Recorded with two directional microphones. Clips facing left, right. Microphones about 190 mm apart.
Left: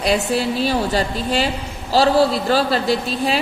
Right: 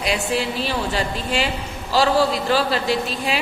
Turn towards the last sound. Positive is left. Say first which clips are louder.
# left 3 dB
turn(degrees=35)  # may be behind; listen again after turning